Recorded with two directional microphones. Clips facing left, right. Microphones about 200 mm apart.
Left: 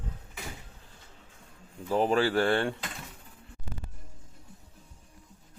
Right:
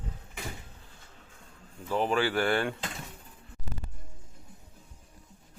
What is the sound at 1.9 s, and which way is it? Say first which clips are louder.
Speech: left 2 dB; 35° left (ahead or behind).